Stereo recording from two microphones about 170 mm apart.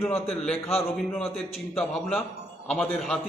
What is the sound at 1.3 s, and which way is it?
A man's voice, centre (ahead or behind).